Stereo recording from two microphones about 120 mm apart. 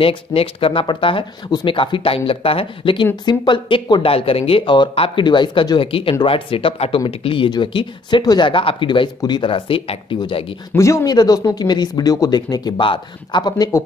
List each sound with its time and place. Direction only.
0.0 s speech: 50° left (ahead or behind)
10.7 s speech: 25° left (ahead or behind)